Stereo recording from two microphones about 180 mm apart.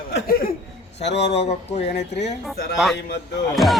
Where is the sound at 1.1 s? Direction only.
35° left (ahead or behind).